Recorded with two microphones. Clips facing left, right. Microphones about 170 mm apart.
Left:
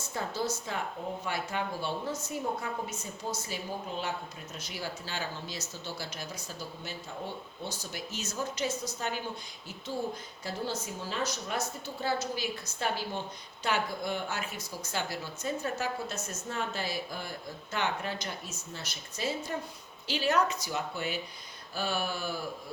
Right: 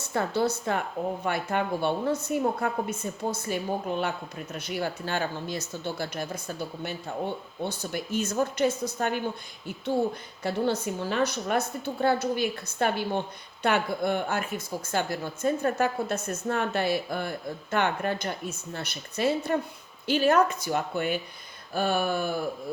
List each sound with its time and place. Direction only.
0.1 s a woman's voice: 65° right (ahead or behind)
20.1 s a woman's voice: 50° right (ahead or behind)